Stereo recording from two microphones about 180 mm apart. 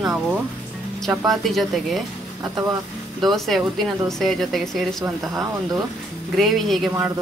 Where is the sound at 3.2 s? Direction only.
Centre (ahead or behind).